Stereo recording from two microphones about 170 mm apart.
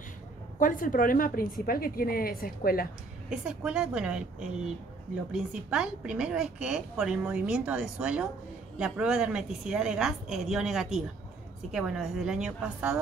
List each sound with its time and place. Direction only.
0.6 s a woman's voice: 50° left (ahead or behind)
3.3 s a woman's voice: 5° right (ahead or behind)